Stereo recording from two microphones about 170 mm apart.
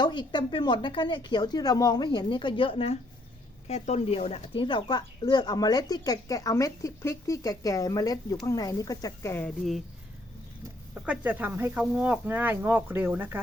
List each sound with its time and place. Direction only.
0.0 s speech: 25° left (ahead or behind)
10.9 s speech: 5° right (ahead or behind)